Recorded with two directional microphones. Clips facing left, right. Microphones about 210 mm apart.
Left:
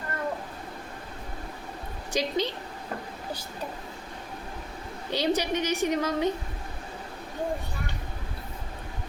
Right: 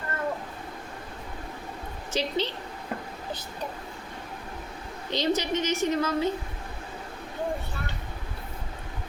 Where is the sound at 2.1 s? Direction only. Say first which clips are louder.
Left 1 dB; 15° left (ahead or behind).